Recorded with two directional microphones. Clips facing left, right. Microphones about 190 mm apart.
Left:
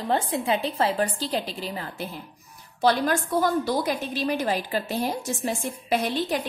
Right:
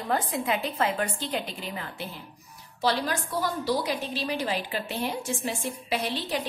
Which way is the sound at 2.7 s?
50° left (ahead or behind).